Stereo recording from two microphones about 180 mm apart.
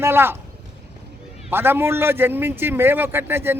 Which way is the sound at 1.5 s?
10° right (ahead or behind).